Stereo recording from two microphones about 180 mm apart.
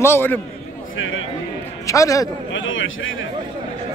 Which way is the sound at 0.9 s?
90° left.